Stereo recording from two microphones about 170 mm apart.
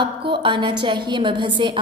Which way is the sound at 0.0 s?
30° right (ahead or behind).